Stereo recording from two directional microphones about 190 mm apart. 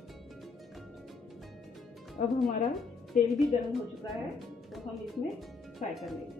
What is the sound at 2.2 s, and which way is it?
Speech, 35° left (ahead or behind).